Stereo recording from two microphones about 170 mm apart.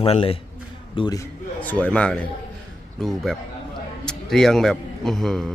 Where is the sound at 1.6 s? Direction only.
10° left (ahead or behind).